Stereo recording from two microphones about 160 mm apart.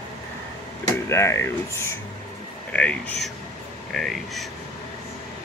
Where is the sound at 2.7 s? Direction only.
5° left (ahead or behind).